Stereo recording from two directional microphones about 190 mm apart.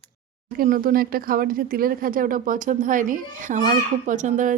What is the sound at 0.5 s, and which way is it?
Speech, 50° right (ahead or behind).